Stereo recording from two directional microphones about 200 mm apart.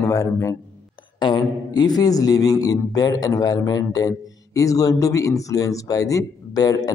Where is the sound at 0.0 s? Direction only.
15° left (ahead or behind).